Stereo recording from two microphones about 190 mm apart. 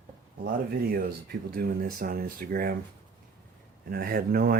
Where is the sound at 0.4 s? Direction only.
50° right (ahead or behind).